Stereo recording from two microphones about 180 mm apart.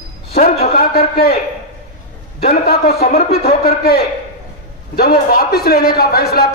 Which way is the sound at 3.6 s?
60° left (ahead or behind).